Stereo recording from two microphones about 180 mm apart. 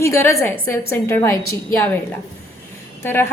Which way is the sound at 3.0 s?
15° left (ahead or behind).